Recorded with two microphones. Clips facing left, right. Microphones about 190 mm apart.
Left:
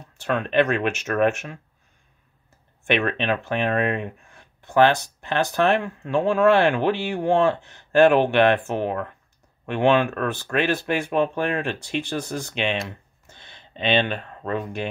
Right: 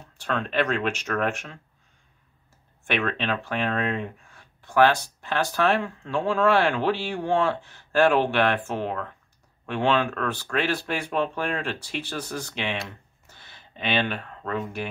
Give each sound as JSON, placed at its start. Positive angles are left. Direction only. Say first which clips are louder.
{"t": 0.3, "sound": "speech", "louder": "left 4 dB", "side_deg": 20}
{"t": 3.1, "sound": "speech", "louder": "left 4 dB", "side_deg": 15}